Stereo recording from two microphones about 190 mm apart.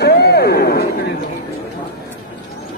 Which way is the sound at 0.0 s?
60° left (ahead or behind).